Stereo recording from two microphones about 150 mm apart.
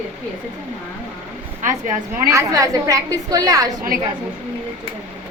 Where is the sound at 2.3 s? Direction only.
20° right (ahead or behind).